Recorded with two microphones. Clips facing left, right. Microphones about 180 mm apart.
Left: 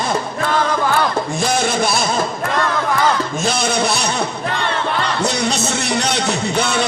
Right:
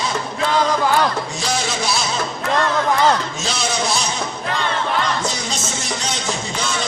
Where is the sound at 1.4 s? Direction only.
55° left (ahead or behind).